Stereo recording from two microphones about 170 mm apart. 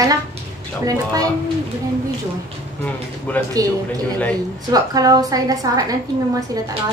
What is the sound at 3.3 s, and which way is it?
Speech, 10° left (ahead or behind).